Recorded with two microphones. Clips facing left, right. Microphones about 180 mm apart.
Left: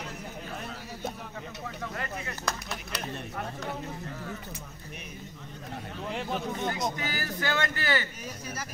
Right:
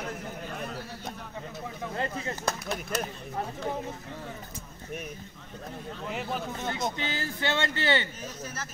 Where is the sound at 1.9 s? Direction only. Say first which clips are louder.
Right 4 dB; 30° right (ahead or behind).